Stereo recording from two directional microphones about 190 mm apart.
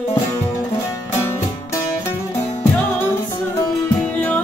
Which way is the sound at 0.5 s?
15° left (ahead or behind).